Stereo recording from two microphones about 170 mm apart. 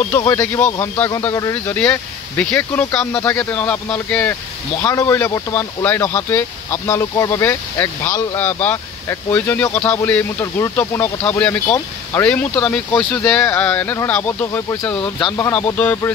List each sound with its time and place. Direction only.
0.1 s speech: 15° left (ahead or behind)